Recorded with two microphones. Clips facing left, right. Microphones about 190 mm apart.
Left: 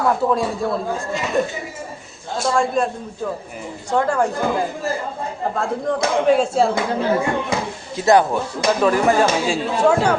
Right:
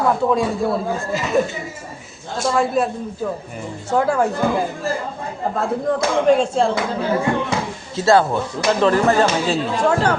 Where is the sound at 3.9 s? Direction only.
5° right (ahead or behind).